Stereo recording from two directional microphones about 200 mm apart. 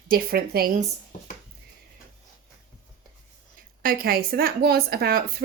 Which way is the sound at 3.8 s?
45° right (ahead or behind).